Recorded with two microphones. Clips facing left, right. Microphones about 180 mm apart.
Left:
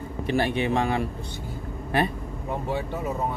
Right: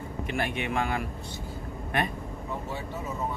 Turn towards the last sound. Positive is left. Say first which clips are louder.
# left 7 dB
turn(degrees=60)  # may be behind; listen again after turning